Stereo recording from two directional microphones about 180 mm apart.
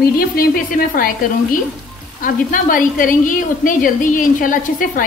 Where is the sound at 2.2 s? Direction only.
50° left (ahead or behind).